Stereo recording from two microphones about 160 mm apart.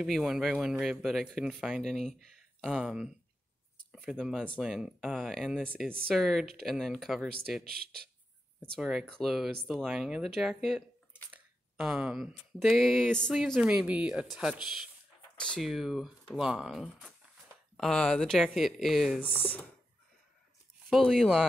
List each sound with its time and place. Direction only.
0.0 s speech: 5° right (ahead or behind)
7.6 s speech: 75° right (ahead or behind)
8.7 s speech: centre (ahead or behind)
20.9 s speech: centre (ahead or behind)